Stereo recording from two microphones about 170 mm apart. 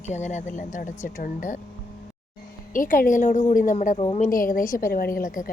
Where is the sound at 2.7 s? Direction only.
55° left (ahead or behind).